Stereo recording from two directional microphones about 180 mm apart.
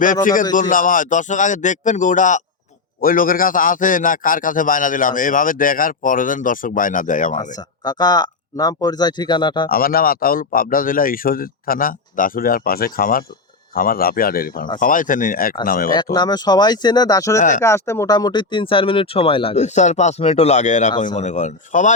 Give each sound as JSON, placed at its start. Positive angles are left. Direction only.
{"t": 0.0, "sound": "a man's voice", "side_deg": 50}
{"t": 7.9, "sound": "speech", "side_deg": 25}
{"t": 9.6, "sound": "a man's voice", "side_deg": 55}
{"t": 16.1, "sound": "a man's voice", "side_deg": 25}